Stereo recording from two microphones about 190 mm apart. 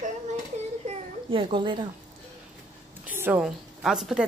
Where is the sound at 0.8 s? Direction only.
25° right (ahead or behind).